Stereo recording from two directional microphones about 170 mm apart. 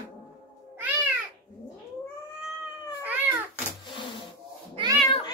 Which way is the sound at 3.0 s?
10° right (ahead or behind).